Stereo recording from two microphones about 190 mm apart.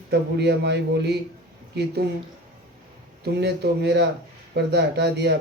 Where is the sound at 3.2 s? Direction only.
60° right (ahead or behind).